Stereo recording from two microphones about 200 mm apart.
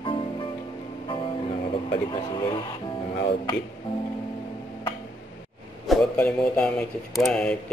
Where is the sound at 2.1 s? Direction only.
25° left (ahead or behind).